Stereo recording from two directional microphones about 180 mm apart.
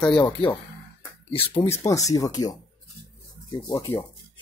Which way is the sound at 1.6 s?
15° left (ahead or behind).